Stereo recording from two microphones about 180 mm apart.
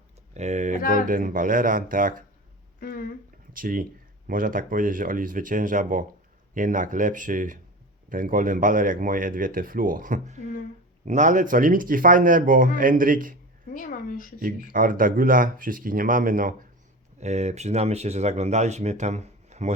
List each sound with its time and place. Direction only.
0.3 s a sound: 40° right (ahead or behind)
1.0 s speech: 50° right (ahead or behind)
2.8 s speech: 50° left (ahead or behind)
3.5 s speech: 50° right (ahead or behind)
13.7 s speech: 50° left (ahead or behind)
14.3 s speech: 50° right (ahead or behind)
17.2 s speech: 40° right (ahead or behind)